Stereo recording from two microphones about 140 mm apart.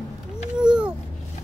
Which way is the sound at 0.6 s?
5° right (ahead or behind).